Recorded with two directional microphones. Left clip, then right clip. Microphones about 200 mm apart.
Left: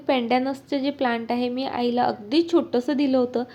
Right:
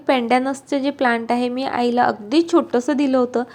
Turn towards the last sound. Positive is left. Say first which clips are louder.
# right 4 dB
turn(degrees=-10)  # may be behind; listen again after turning